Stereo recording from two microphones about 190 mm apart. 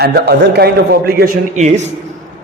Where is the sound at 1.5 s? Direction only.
35° right (ahead or behind).